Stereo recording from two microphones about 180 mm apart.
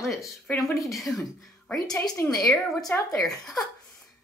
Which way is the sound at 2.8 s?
15° left (ahead or behind).